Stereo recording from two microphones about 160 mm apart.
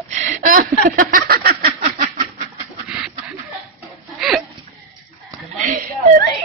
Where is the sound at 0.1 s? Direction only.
50° right (ahead or behind); by 2.0 s 70° right (ahead or behind).